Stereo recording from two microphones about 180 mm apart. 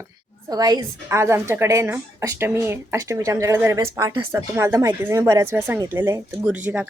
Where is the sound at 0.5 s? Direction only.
20° right (ahead or behind).